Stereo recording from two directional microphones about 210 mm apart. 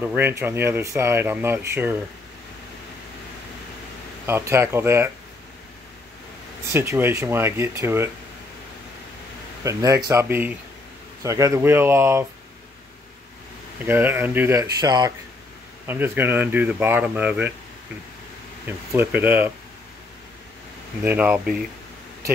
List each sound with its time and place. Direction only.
0.0 s speech: 10° right (ahead or behind)
4.3 s speech: 10° right (ahead or behind)
6.7 s speech: 10° right (ahead or behind)
9.6 s speech: 15° right (ahead or behind)
13.8 s speech: 10° right (ahead or behind)
18.7 s speech: 10° right (ahead or behind)
21.0 s speech: 10° right (ahead or behind)